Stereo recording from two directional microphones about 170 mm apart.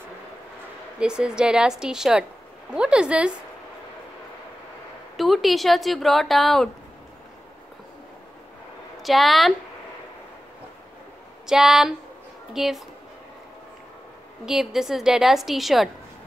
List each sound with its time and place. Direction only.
0.9 s speech: 5° right (ahead or behind)
5.1 s speech: centre (ahead or behind)
9.0 s speech: centre (ahead or behind)
11.4 s speech: centre (ahead or behind)
14.4 s speech: centre (ahead or behind)